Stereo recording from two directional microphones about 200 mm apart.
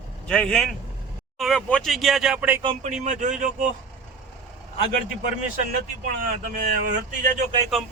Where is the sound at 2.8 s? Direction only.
35° right (ahead or behind).